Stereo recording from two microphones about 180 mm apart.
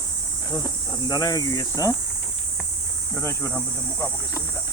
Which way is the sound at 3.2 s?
15° left (ahead or behind).